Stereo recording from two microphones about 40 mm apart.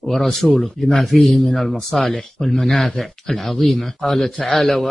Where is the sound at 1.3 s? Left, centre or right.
Centre.